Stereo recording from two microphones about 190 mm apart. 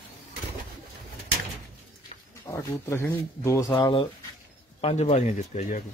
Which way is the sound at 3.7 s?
25° left (ahead or behind).